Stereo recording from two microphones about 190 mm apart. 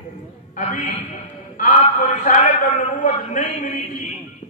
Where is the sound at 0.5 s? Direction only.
45° left (ahead or behind).